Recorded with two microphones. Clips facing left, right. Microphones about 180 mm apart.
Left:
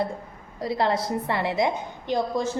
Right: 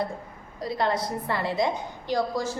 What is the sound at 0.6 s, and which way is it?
A woman's voice, 25° left (ahead or behind).